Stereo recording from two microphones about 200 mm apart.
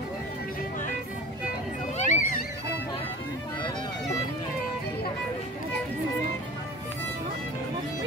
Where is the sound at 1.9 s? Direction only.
40° left (ahead or behind).